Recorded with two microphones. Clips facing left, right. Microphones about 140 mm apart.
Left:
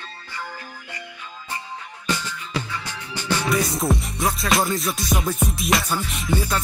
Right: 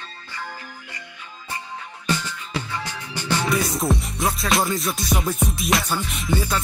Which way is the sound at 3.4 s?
Centre (ahead or behind).